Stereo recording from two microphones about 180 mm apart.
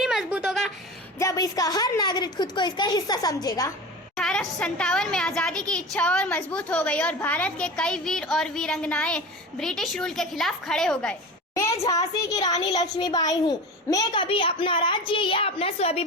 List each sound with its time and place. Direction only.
0.0 s a sound: centre (ahead or behind)
1.2 s a woman's voice: 20° left (ahead or behind)
4.2 s a woman's voice: 5° left (ahead or behind)
11.5 s a child's voice: 20° left (ahead or behind); by 16.0 s 35° left (ahead or behind)